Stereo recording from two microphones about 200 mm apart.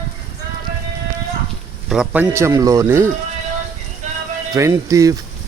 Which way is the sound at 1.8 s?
5° right (ahead or behind).